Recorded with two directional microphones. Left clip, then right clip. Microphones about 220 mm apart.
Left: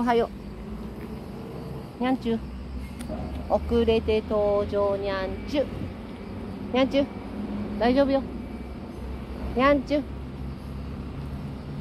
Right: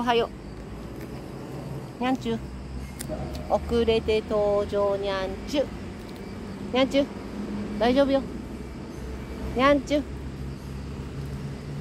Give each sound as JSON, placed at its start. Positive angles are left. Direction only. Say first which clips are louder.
{"t": 0.0, "sound": "speech", "louder": "even", "side_deg": 10}
{"t": 2.0, "sound": "speech", "louder": "left 1 dB", "side_deg": 15}
{"t": 3.4, "sound": "speech", "louder": "even", "side_deg": 20}
{"t": 6.7, "sound": "speech", "louder": "even", "side_deg": 15}
{"t": 9.6, "sound": "speech", "louder": "even", "side_deg": 15}